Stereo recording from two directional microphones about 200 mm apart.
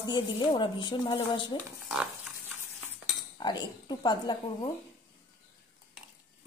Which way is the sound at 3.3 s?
20° left (ahead or behind).